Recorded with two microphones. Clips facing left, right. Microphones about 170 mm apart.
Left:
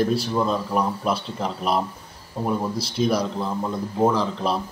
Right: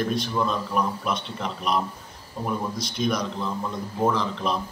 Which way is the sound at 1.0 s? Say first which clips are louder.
Left 4 dB; 35° left (ahead or behind).